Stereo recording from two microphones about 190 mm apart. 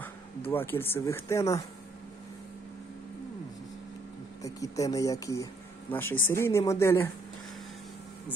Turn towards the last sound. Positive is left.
turn(degrees=15)  # may be behind; listen again after turning